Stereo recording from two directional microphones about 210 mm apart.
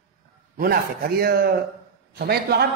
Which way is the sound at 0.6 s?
45° right (ahead or behind).